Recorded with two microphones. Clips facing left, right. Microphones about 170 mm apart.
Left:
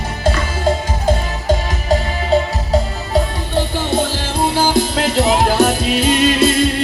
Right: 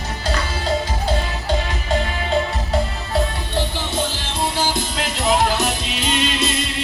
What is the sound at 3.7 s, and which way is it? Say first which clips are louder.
Music: left 6 dB; 55° left (ahead or behind).